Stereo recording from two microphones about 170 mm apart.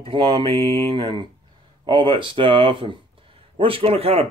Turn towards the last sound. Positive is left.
turn(degrees=-35)  # may be behind; listen again after turning